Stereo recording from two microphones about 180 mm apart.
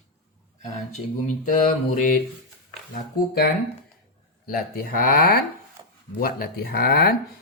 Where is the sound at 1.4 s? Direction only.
45° left (ahead or behind).